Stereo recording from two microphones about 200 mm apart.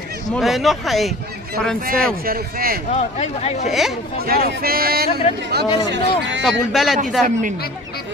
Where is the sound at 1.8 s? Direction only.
45° right (ahead or behind).